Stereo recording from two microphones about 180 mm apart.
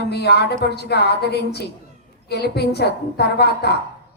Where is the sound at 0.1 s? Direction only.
65° left (ahead or behind).